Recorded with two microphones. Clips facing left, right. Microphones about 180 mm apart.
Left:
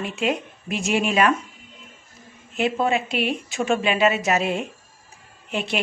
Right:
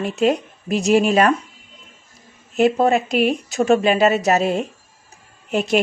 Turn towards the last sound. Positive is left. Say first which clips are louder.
# right 7 dB
turn(degrees=-40)  # may be behind; listen again after turning